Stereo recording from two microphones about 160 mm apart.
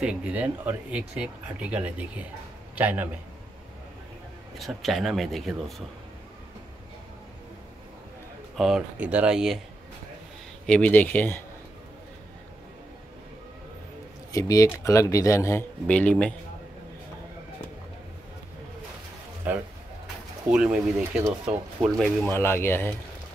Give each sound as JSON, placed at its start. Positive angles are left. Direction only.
{"t": 0.0, "sound": "a man's voice", "side_deg": -5}
{"t": 4.6, "sound": "speech", "side_deg": 0}
{"t": 8.5, "sound": "speech", "side_deg": 0}
{"t": 10.7, "sound": "speech", "side_deg": 10}
{"t": 14.3, "sound": "speech", "side_deg": 20}
{"t": 19.4, "sound": "speech", "side_deg": -10}
{"t": 22.3, "sound": "speech", "side_deg": 15}